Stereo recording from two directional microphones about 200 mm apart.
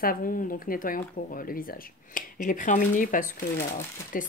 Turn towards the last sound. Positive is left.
turn(degrees=45)  # may be behind; listen again after turning